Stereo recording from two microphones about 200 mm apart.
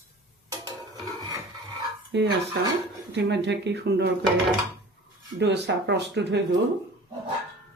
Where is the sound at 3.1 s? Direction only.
60° right (ahead or behind).